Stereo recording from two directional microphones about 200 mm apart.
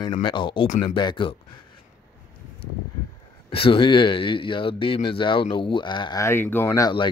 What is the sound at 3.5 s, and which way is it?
Speech, 25° left (ahead or behind).